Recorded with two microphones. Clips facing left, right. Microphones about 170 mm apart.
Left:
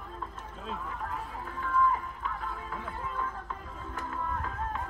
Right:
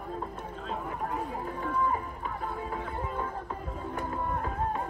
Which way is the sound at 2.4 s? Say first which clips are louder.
Right 4 dB; 50° right (ahead or behind).